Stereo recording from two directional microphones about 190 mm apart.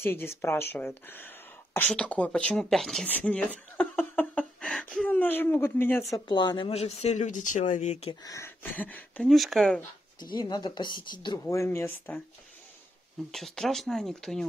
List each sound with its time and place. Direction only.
0.0 s speech: 10° left (ahead or behind); by 8.2 s 35° left (ahead or behind)
8.2 s speech: 15° left (ahead or behind)
10.3 s speech: 20° left (ahead or behind)
13.3 s speech: centre (ahead or behind)